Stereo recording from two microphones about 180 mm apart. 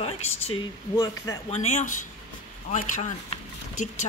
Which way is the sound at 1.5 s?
40° left (ahead or behind).